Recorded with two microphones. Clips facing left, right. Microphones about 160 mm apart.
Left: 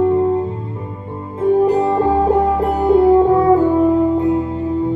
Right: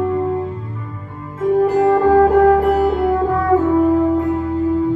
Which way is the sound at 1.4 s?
30° left (ahead or behind).